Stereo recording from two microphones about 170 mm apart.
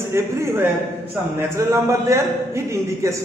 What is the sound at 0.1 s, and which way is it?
A man's voice, 15° right (ahead or behind).